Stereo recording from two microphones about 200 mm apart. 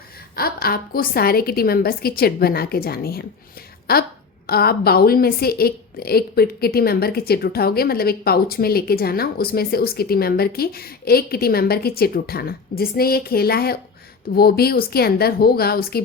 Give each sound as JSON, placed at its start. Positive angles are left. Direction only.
{"t": 0.3, "sound": "a woman's voice", "side_deg": 50}